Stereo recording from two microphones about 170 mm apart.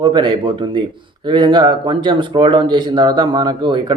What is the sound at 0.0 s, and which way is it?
Speech, 25° right (ahead or behind).